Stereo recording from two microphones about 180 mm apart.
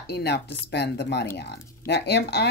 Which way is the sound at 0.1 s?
65° left (ahead or behind).